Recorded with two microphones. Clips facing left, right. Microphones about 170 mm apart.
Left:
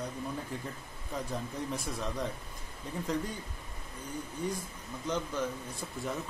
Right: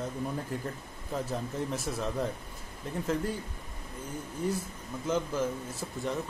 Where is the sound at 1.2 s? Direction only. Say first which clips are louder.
Right 3 dB; centre (ahead or behind).